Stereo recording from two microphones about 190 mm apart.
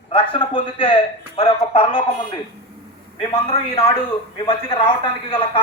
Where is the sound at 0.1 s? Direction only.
30° left (ahead or behind).